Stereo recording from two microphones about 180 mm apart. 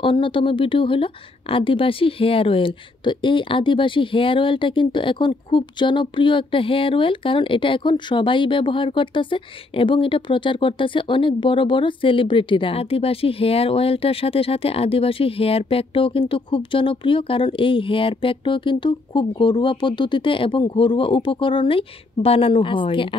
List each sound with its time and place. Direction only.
0.0 s speech: 30° left (ahead or behind)